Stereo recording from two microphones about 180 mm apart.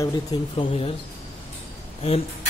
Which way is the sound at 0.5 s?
30° left (ahead or behind).